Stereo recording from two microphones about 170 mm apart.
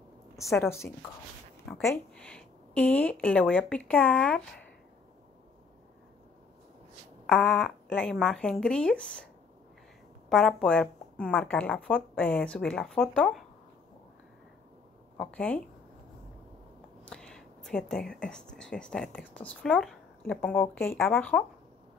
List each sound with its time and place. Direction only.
0.5 s a woman's voice: 15° left (ahead or behind)
7.2 s speech: 5° left (ahead or behind)
10.3 s speech: centre (ahead or behind)
15.1 s a woman's voice: 5° left (ahead or behind)
17.0 s a woman's voice: 5° left (ahead or behind)